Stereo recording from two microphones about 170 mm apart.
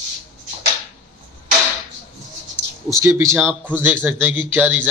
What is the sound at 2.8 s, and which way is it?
A man's voice, 15° right (ahead or behind).